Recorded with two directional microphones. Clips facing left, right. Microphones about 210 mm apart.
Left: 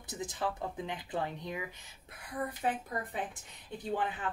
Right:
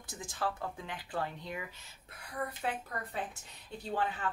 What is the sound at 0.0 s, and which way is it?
Speech, 20° left (ahead or behind).